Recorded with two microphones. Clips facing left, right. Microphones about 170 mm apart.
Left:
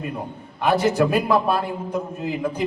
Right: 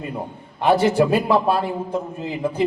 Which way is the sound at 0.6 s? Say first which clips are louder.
Right 2 dB; 25° right (ahead or behind).